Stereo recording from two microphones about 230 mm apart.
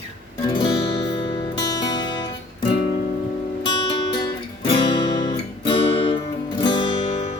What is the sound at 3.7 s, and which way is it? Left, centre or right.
Music, left.